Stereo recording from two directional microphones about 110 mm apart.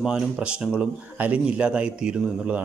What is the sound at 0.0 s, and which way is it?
Speech, 10° right (ahead or behind).